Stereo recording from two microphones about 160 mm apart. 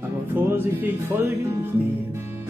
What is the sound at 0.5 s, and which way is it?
Music, 10° right (ahead or behind).